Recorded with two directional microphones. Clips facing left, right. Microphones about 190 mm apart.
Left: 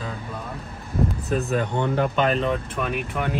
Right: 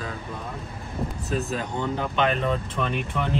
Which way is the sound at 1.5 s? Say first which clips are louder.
Left 4 dB; 60° left (ahead or behind).